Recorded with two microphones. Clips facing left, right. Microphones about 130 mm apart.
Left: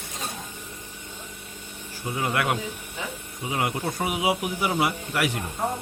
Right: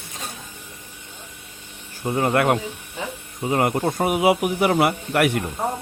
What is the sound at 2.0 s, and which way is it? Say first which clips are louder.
A man's voice: right 7 dB; 50° right (ahead or behind).